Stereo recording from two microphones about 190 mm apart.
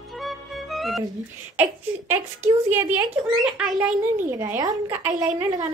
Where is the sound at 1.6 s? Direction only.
15° right (ahead or behind).